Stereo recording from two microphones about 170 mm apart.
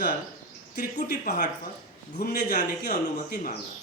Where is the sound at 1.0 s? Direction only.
65° left (ahead or behind).